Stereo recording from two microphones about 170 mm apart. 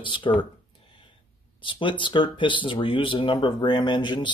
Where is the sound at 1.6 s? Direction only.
30° left (ahead or behind).